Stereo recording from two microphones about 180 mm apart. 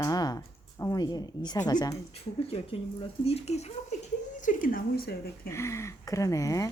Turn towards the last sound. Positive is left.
turn(degrees=20)  # may be behind; listen again after turning